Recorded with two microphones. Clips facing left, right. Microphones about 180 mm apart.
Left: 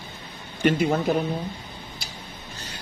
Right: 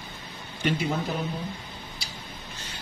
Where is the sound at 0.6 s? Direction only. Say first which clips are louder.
Left 6 dB; 50° left (ahead or behind).